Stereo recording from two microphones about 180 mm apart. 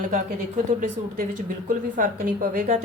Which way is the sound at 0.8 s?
50° right (ahead or behind).